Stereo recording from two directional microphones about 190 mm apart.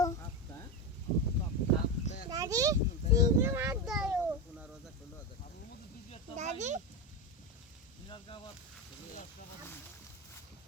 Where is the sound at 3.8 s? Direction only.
5° right (ahead or behind).